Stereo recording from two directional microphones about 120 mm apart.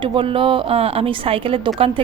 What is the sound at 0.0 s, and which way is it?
Speech, 45° right (ahead or behind).